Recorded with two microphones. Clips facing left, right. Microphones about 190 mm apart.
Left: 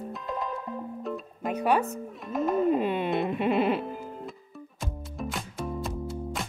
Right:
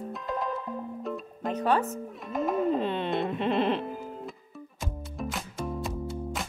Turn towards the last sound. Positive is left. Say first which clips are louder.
# even
turn(degrees=0)  # may be behind; listen again after turning